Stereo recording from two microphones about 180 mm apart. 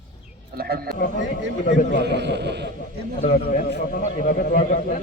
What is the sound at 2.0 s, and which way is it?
Speech, 70° right (ahead or behind).